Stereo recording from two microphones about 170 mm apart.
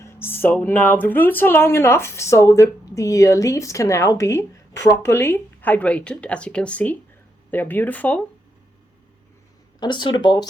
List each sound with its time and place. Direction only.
0.0 s speech: 15° left (ahead or behind)
9.8 s speech: 25° left (ahead or behind)